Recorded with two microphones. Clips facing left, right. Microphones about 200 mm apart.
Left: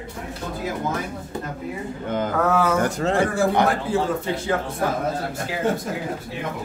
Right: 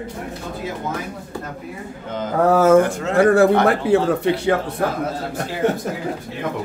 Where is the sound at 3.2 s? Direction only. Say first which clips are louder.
Right 8 dB; 65° right (ahead or behind).